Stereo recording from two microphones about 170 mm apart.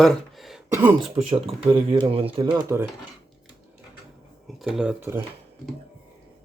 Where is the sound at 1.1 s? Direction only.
35° right (ahead or behind).